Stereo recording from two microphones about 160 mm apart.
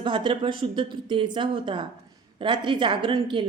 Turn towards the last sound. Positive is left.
turn(degrees=-30)  # may be behind; listen again after turning